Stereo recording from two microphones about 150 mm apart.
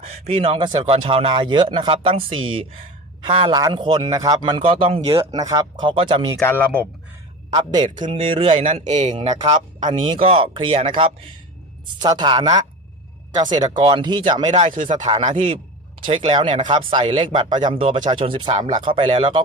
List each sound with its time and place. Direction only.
0.0 s a man's voice: 40° right (ahead or behind)
5.2 s a woman's voice: 25° right (ahead or behind)
6.4 s speech: 15° left (ahead or behind)
7.5 s a woman's voice: 25° right (ahead or behind)
8.5 s speech: 55° right (ahead or behind)
9.5 s a man's voice: 30° right (ahead or behind)
15.3 s speech: 45° right (ahead or behind)
16.0 s a man's voice: 35° right (ahead or behind)